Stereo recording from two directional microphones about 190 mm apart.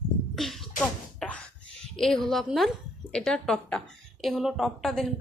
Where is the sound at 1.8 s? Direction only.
Centre (ahead or behind).